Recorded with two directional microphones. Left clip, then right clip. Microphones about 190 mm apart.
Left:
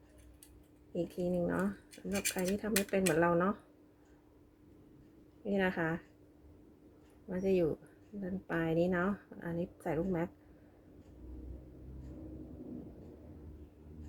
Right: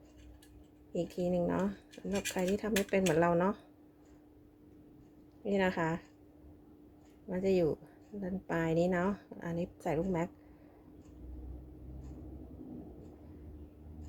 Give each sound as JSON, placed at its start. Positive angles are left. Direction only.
{"t": 0.9, "sound": "a woman's voice", "side_deg": -25}
{"t": 5.4, "sound": "a woman's voice", "side_deg": -25}
{"t": 7.3, "sound": "a woman's voice", "side_deg": -25}